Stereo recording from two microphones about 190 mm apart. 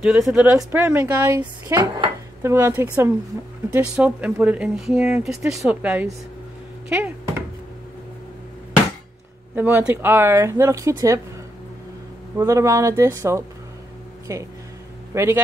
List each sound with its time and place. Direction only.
0.0 s speech: 5° right (ahead or behind)
9.6 s speech: 10° right (ahead or behind)
12.4 s speech: 15° right (ahead or behind)